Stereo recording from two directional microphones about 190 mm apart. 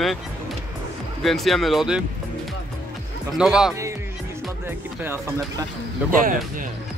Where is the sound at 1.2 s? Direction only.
Centre (ahead or behind).